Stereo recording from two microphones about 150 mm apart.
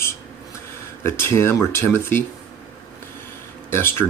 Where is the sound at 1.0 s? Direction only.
15° left (ahead or behind).